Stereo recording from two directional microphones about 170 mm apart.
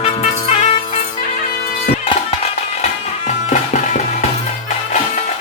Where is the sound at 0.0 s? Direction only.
40° left (ahead or behind).